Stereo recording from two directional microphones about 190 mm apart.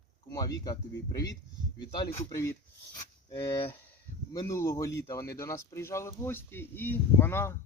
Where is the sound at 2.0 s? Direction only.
15° left (ahead or behind).